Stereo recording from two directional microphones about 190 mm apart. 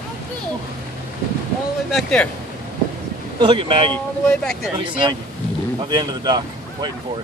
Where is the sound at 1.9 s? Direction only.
5° left (ahead or behind).